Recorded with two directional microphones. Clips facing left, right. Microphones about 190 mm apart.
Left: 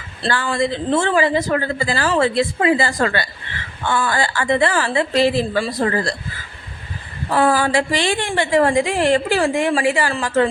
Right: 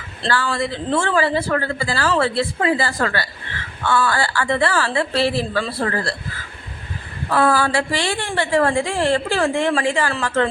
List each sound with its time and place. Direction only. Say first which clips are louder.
0.2 s a woman's voice: left 2 dB; 20° left (ahead or behind)
7.3 s a woman's voice: left 1 dB; 15° left (ahead or behind)